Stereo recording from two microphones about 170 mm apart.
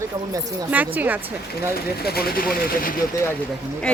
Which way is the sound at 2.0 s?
65° left (ahead or behind).